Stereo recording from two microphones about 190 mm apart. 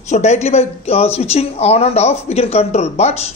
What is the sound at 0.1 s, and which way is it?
Speech, 35° left (ahead or behind).